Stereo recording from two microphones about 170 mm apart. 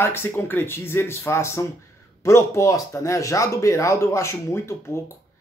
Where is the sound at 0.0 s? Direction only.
15° left (ahead or behind).